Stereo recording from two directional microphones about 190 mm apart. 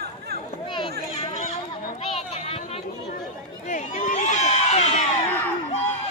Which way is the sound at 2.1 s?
35° left (ahead or behind).